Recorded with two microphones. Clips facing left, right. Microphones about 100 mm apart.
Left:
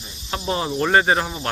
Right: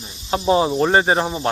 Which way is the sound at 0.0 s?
30° right (ahead or behind).